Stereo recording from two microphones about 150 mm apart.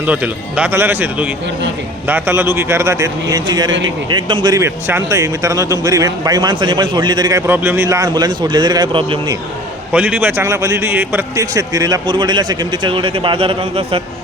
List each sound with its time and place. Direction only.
0.0 s a man's voice: 10° right (ahead or behind); by 9.3 s 35° right (ahead or behind)
9.9 s a man's voice: 10° right (ahead or behind); by 14.0 s 40° right (ahead or behind)